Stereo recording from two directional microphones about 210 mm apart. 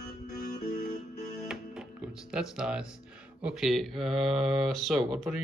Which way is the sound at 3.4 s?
5° right (ahead or behind).